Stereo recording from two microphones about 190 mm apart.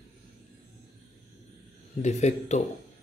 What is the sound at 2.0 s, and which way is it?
Speech, 35° left (ahead or behind).